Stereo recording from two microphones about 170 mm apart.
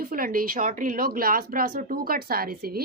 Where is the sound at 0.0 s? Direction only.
55° right (ahead or behind).